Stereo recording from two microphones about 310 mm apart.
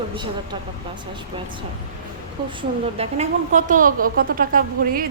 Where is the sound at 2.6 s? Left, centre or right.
Centre.